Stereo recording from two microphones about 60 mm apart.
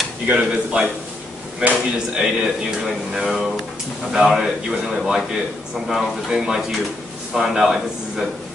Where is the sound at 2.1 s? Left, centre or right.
Centre.